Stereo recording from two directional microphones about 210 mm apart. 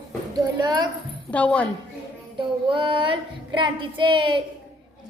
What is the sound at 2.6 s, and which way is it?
A child's voice, 25° right (ahead or behind).